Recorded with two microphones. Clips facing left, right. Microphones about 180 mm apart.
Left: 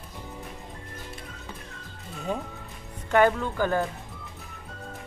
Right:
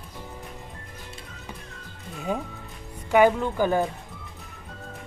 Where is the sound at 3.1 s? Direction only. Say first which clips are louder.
Right 2 dB; 10° right (ahead or behind).